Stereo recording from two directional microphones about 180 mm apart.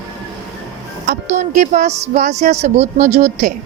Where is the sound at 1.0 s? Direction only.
45° right (ahead or behind).